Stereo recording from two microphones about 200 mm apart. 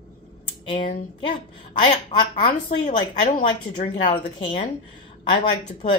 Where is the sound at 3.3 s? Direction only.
35° left (ahead or behind).